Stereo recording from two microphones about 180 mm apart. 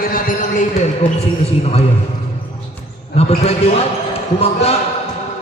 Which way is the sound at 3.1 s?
35° left (ahead or behind).